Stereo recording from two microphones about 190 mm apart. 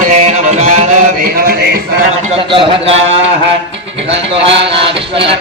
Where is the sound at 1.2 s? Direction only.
50° right (ahead or behind).